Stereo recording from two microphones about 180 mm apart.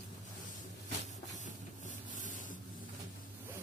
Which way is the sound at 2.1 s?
45° left (ahead or behind).